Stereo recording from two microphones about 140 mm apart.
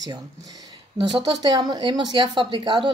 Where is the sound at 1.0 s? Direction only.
35° right (ahead or behind).